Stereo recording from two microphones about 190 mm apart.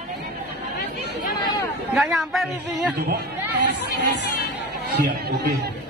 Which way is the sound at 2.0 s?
Centre (ahead or behind).